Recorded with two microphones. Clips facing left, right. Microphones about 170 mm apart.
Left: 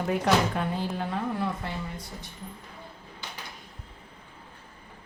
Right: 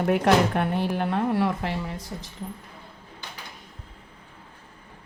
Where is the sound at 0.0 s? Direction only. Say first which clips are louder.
Right 4 dB; 60° right (ahead or behind); by 2.3 s 90° right.